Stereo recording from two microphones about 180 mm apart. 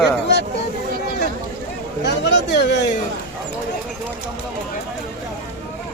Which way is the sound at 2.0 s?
75° left (ahead or behind).